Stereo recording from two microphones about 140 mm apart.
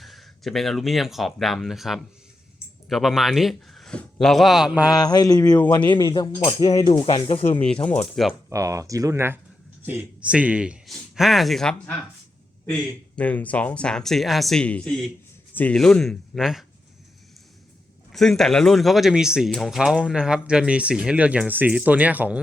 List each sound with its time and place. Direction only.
0.0 s a man's voice: centre (ahead or behind)
4.9 s a sound: 30° left (ahead or behind)
5.5 s speech: 15° left (ahead or behind)
5.9 s a sound: 30° left (ahead or behind)
6.8 s speech: 40° left (ahead or behind)
7.6 s speech: 10° left (ahead or behind)
8.4 s speech: 25° right (ahead or behind); by 16.6 s centre (ahead or behind)
18.1 s speech: 5° left (ahead or behind)